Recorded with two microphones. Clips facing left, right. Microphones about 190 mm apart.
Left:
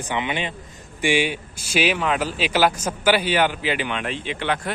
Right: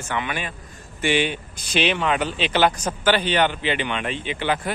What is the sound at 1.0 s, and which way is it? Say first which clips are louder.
A man's voice: left 1 dB; 10° left (ahead or behind).